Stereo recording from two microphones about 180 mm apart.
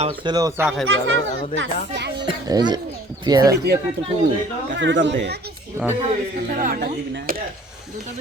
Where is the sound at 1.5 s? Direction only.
75° right (ahead or behind).